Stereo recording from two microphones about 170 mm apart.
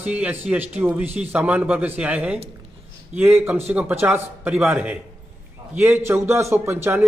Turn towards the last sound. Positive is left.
turn(degrees=-15)  # may be behind; listen again after turning